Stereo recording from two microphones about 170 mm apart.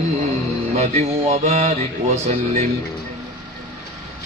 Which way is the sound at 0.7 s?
40° right (ahead or behind).